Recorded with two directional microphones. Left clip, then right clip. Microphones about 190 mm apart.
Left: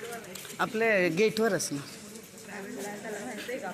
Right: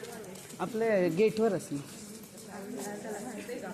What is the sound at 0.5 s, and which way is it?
Speech, 10° left (ahead or behind).